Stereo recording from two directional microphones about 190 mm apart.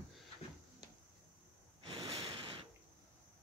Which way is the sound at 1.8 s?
30° right (ahead or behind).